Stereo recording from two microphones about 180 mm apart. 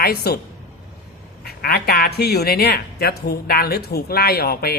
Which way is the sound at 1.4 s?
60° left (ahead or behind).